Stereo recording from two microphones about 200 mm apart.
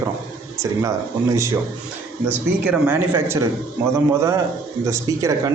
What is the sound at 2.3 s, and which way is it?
Speech, 10° right (ahead or behind).